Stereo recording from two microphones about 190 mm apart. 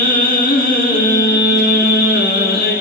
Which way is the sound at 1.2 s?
55° left (ahead or behind).